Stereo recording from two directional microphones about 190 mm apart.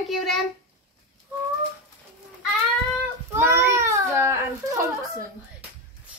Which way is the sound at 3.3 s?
15° right (ahead or behind).